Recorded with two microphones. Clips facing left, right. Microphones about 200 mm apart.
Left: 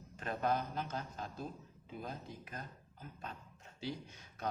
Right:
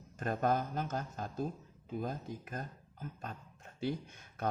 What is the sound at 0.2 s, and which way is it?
Speech, 45° right (ahead or behind).